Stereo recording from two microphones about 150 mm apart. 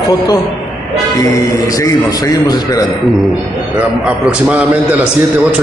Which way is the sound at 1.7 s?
20° left (ahead or behind).